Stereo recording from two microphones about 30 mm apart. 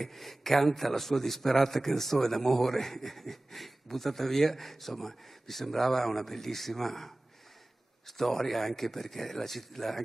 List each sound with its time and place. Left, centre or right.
0.0 s a man's voice: centre
8.2 s a man's voice: centre